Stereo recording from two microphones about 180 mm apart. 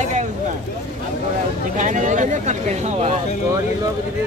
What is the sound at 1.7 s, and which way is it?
Speech, 45° right (ahead or behind).